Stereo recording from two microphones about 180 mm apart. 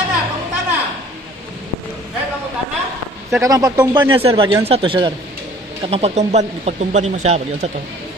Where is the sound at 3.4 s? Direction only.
20° right (ahead or behind).